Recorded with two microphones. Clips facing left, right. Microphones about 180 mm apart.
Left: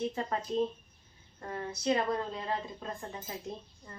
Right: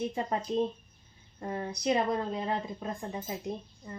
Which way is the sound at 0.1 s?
20° right (ahead or behind).